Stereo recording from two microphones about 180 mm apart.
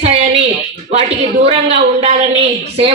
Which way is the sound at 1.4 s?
35° right (ahead or behind).